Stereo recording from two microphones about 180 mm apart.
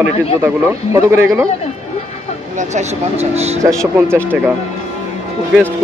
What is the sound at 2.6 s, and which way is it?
Speech, 40° right (ahead or behind).